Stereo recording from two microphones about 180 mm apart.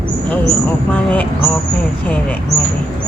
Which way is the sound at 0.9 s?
5° left (ahead or behind).